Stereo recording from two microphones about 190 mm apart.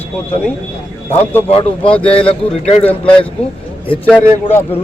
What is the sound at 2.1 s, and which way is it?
Speech, 30° left (ahead or behind).